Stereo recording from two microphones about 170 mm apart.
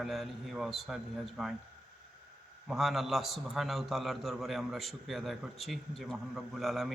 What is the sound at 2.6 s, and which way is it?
A man's voice, centre (ahead or behind).